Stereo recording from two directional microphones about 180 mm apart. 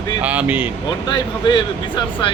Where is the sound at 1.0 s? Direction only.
25° left (ahead or behind).